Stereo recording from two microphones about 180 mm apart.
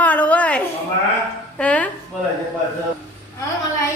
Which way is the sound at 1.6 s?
10° left (ahead or behind).